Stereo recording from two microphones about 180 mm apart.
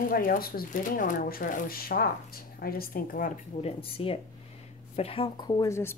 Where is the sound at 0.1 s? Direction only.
50° left (ahead or behind).